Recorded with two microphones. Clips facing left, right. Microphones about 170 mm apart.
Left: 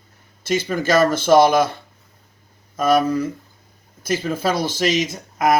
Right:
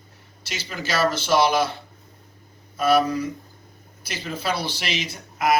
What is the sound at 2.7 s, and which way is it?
Speech, 45° left (ahead or behind).